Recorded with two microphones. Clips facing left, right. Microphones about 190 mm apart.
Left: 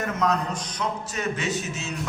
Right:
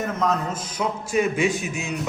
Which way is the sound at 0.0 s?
Centre (ahead or behind).